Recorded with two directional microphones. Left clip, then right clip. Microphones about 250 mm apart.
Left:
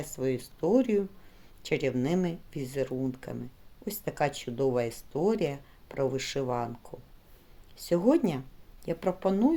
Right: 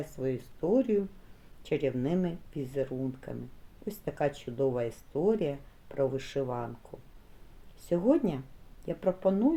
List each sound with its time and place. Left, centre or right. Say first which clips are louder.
0.0 s speech: left 3 dB; left
7.9 s speech: left 2 dB; left